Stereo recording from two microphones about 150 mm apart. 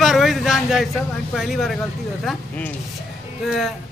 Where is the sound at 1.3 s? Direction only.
Centre (ahead or behind).